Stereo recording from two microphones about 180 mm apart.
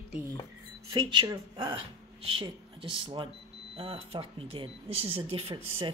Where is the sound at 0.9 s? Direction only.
20° right (ahead or behind).